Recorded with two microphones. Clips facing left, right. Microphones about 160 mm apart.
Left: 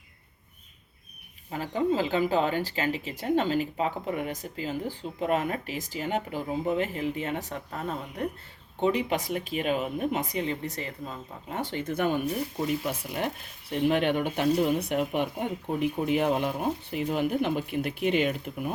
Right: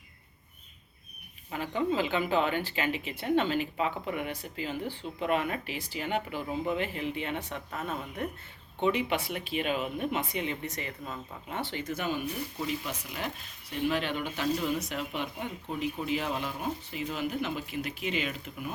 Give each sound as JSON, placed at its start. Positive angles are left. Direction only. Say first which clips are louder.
{"t": 1.5, "sound": "speech", "louder": "left 3 dB", "side_deg": 35}